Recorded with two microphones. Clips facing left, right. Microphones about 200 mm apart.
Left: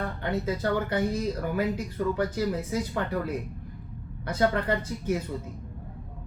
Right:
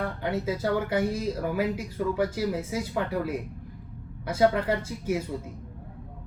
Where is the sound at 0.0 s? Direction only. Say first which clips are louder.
Right 1 dB; 10° right (ahead or behind).